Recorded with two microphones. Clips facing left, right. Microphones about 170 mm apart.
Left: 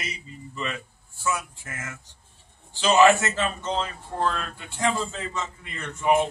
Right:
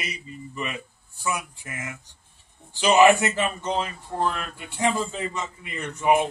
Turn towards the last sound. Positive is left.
turn(degrees=-15)  # may be behind; listen again after turning